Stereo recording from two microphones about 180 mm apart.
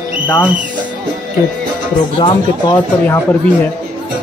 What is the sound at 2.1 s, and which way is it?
Speech, 25° left (ahead or behind).